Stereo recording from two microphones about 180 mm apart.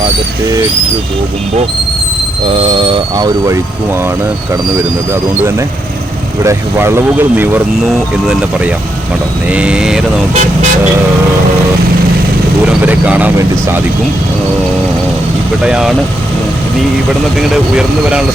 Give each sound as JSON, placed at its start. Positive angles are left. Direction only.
{"t": 2.6, "sound": "speech", "side_deg": -30}
{"t": 6.4, "sound": "speech", "side_deg": -15}
{"t": 12.6, "sound": "speech", "side_deg": -10}
{"t": 15.6, "sound": "speech", "side_deg": -5}
{"t": 17.5, "sound": "speech", "side_deg": -5}